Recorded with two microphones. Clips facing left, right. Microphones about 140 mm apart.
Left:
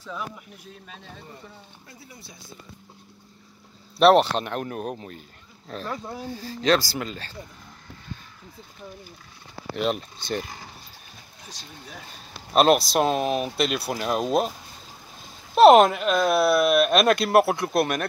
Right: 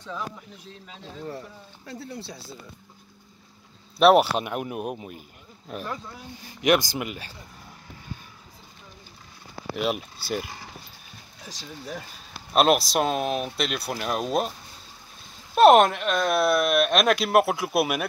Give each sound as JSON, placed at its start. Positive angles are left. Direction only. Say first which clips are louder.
{"t": 1.9, "sound": "speech", "louder": "right 13 dB", "side_deg": -70}
{"t": 4.0, "sound": "speech", "louder": "left 1 dB", "side_deg": -5}
{"t": 6.3, "sound": "speech", "louder": "even", "side_deg": -15}
{"t": 9.8, "sound": "speech", "louder": "left 1 dB", "side_deg": -5}
{"t": 12.5, "sound": "speech", "louder": "left 2 dB", "side_deg": 0}
{"t": 15.5, "sound": "speech", "louder": "left 2 dB", "side_deg": 0}